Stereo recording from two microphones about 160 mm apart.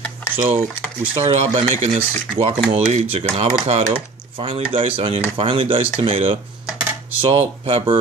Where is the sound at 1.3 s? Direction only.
30° right (ahead or behind).